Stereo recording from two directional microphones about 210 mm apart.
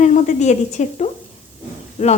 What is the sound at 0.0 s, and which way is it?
A woman's voice, 35° left (ahead or behind).